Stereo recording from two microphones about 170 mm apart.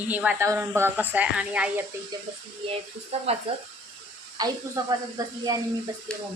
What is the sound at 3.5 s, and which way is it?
Speech, 35° right (ahead or behind).